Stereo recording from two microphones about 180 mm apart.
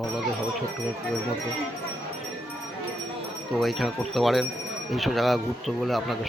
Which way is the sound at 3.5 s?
Centre (ahead or behind).